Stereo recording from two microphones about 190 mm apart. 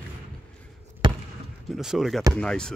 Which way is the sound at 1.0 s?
25° right (ahead or behind).